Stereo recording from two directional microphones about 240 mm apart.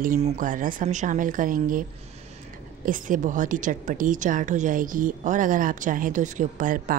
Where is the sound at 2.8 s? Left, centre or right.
Right.